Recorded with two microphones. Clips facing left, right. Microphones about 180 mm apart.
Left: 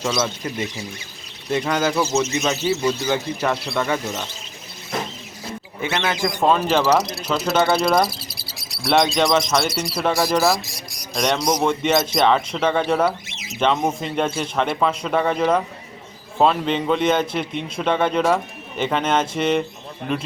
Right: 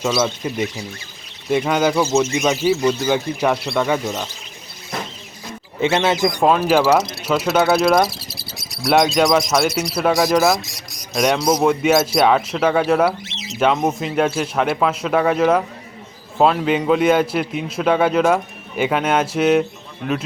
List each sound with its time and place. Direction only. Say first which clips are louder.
0.0 s speech: right 3 dB; 10° right (ahead or behind)
5.8 s speech: right 6 dB; 25° right (ahead or behind); by 8.1 s centre (ahead or behind)
8.3 s insect: right 4 dB; 20° right (ahead or behind)
8.8 s speech: right 3 dB; centre (ahead or behind)